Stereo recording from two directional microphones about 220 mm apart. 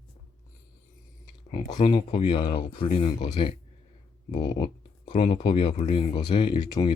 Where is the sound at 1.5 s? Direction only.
20° left (ahead or behind).